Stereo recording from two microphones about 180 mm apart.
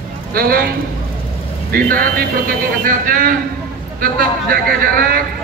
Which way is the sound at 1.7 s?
55° right (ahead or behind).